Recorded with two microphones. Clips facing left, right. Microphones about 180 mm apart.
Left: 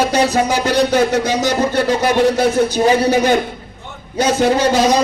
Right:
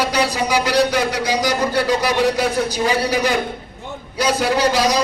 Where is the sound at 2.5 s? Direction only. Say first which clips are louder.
Left 6 dB; 25° left (ahead or behind).